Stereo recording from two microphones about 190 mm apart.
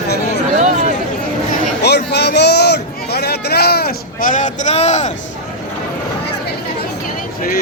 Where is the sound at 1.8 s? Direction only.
60° left (ahead or behind); by 5.1 s 35° left (ahead or behind).